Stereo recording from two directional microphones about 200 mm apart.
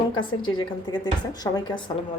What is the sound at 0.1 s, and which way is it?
A woman's voice, 25° left (ahead or behind).